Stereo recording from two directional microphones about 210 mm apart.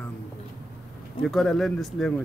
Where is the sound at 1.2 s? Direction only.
Centre (ahead or behind).